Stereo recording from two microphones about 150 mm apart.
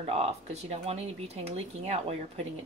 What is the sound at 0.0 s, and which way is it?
Speech, 40° right (ahead or behind).